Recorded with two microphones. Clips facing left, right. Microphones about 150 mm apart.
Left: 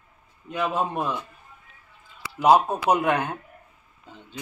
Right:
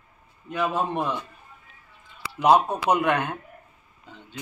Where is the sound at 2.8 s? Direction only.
35° left (ahead or behind).